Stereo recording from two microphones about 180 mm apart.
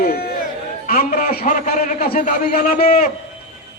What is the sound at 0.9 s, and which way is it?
A man's voice, 45° left (ahead or behind).